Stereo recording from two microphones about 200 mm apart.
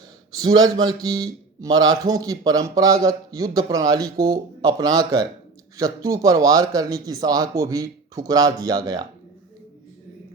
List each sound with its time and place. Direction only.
0.3 s a man's voice: 20° right (ahead or behind)